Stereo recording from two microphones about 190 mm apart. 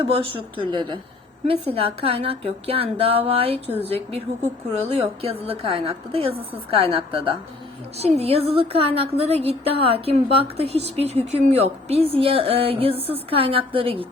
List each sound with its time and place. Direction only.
0.1 s a woman's voice: 25° right (ahead or behind)